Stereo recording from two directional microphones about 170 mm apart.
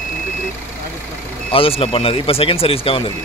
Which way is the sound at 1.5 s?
35° left (ahead or behind).